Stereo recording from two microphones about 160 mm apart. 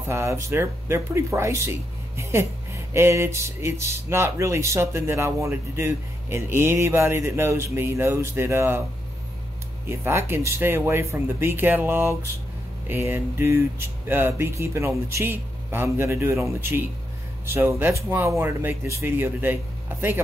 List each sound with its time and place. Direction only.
0.0 s speech: 15° right (ahead or behind)
9.8 s speech: 15° right (ahead or behind)